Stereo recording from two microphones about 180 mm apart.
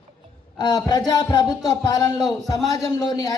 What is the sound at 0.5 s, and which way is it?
A man's voice, 25° left (ahead or behind).